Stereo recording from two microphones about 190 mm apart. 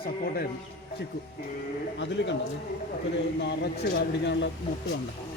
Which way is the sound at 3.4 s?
65° left (ahead or behind).